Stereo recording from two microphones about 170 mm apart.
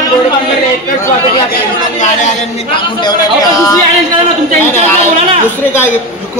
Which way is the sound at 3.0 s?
20° left (ahead or behind).